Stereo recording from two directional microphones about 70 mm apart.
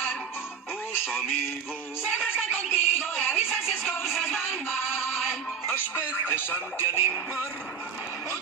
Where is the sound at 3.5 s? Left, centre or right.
Centre.